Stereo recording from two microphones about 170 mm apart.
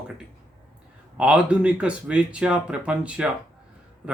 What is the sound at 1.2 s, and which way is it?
A man's voice, 5° right (ahead or behind).